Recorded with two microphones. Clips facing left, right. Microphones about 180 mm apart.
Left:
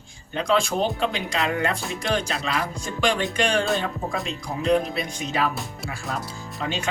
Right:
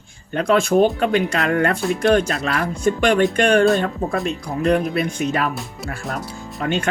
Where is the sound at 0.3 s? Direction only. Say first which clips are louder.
Right 7 dB; 55° right (ahead or behind).